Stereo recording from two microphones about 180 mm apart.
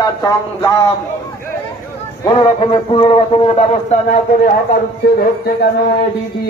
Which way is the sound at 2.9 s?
30° left (ahead or behind).